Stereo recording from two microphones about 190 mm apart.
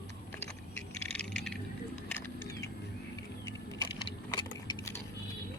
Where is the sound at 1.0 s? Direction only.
5° left (ahead or behind).